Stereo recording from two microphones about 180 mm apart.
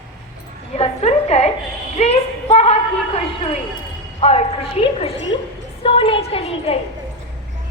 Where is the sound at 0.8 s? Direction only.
35° left (ahead or behind).